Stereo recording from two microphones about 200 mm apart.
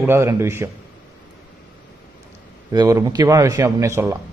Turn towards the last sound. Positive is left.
turn(degrees=-15)  # may be behind; listen again after turning